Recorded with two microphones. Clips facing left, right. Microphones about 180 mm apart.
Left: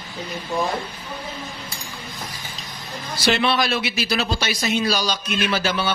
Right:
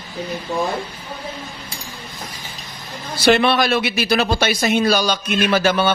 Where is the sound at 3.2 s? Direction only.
55° right (ahead or behind).